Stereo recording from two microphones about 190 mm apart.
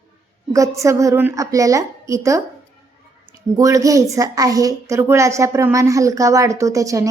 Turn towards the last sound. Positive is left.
turn(degrees=-15)  # may be behind; listen again after turning